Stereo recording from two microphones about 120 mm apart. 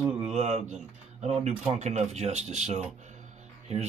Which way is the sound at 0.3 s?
65° right (ahead or behind).